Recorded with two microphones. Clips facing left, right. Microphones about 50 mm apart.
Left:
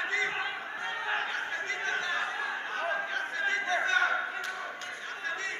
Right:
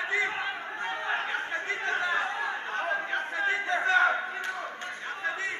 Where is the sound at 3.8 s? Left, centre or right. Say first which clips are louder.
Right 5 dB; centre.